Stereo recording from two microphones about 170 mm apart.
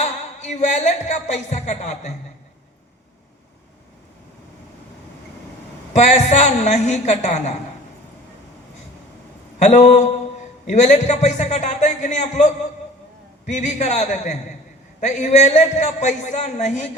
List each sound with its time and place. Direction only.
0.0 s speech: 45° left (ahead or behind)
5.9 s a man's voice: 45° left (ahead or behind)
9.6 s a man's voice: 45° left (ahead or behind)